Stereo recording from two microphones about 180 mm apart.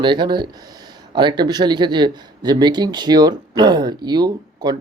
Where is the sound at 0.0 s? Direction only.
25° right (ahead or behind).